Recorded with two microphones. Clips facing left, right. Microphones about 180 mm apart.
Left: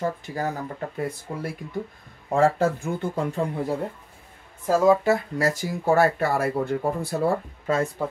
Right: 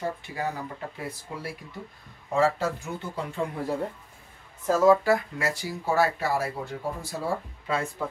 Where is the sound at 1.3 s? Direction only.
55° left (ahead or behind).